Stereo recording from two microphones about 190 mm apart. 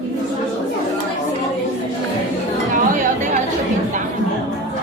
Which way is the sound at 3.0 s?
40° right (ahead or behind).